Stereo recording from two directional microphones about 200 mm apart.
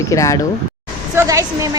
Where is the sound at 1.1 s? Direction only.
15° right (ahead or behind).